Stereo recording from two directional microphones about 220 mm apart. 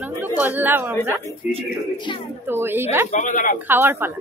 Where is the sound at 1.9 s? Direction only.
20° left (ahead or behind).